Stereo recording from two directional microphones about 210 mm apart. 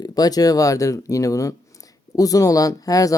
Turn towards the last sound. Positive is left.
turn(degrees=15)  # may be behind; listen again after turning